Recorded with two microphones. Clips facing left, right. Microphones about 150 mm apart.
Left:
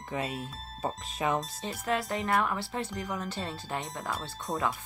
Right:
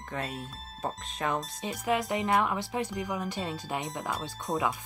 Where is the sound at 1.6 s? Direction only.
15° right (ahead or behind).